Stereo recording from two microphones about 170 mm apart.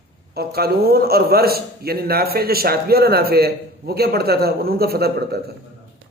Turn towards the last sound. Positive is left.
turn(degrees=-65)  # may be behind; listen again after turning